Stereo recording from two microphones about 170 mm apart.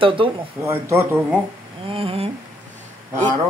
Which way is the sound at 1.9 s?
35° right (ahead or behind).